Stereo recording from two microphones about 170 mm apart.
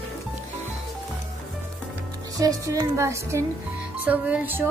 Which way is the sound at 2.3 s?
20° right (ahead or behind).